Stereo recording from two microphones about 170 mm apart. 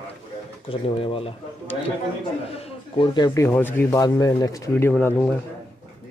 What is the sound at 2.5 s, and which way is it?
Speech, 30° left (ahead or behind).